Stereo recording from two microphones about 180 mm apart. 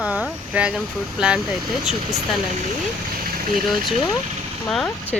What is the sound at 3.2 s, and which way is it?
Vehicle, 50° right (ahead or behind).